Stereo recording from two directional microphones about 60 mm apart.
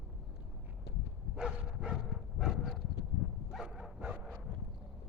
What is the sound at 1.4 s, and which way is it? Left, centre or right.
Dog, centre.